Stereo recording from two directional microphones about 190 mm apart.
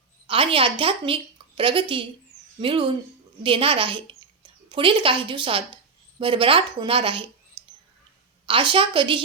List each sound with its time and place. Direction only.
0.3 s a woman's voice: 30° right (ahead or behind)
8.4 s a woman's voice: 25° right (ahead or behind)